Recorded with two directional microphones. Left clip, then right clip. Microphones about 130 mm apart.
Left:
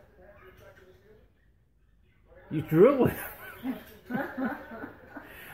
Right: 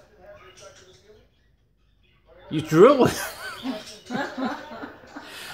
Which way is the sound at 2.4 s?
30° right (ahead or behind).